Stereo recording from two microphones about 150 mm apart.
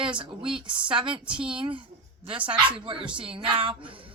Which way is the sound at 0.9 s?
35° right (ahead or behind).